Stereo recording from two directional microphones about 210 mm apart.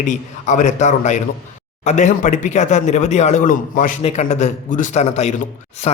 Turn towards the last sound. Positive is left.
turn(degrees=30)  # may be behind; listen again after turning